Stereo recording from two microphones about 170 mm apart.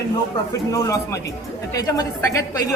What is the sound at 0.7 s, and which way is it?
Speech, 20° left (ahead or behind).